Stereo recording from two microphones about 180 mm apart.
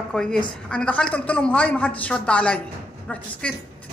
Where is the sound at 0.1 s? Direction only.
5° left (ahead or behind).